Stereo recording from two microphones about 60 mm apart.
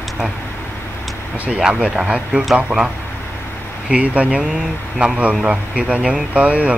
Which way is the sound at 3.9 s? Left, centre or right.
Right.